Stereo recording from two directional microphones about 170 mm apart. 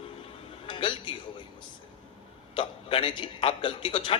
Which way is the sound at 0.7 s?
30° left (ahead or behind).